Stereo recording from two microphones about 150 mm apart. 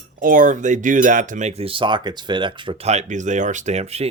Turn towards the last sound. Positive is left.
turn(degrees=-45)  # may be behind; listen again after turning